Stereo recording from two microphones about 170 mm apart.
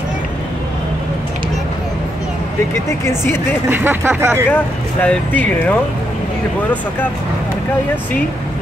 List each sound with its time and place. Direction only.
2.7 s speech: 15° left (ahead or behind)
3.6 s speech: 10° right (ahead or behind)
5.0 s speech: 10° left (ahead or behind)